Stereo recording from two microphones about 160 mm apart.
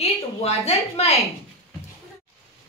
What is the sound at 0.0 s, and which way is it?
A woman's voice, 40° left (ahead or behind).